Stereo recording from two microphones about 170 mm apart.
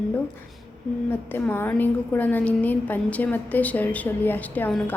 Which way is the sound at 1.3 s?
10° left (ahead or behind).